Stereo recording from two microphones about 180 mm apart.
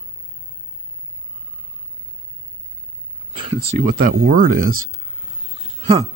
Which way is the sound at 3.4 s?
35° right (ahead or behind).